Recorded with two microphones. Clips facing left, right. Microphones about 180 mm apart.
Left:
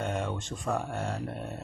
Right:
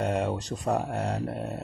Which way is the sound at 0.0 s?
35° right (ahead or behind).